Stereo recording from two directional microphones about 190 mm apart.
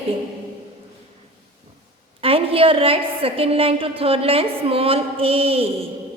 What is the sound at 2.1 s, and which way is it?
A woman's voice, 30° right (ahead or behind).